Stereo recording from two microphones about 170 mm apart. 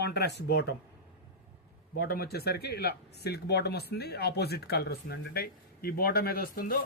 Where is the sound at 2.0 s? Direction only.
65° left (ahead or behind).